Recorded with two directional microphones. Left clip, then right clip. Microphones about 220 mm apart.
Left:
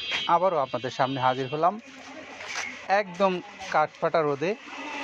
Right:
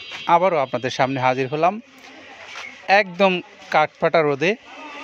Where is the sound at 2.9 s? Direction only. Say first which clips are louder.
Right 8 dB; 50° right (ahead or behind).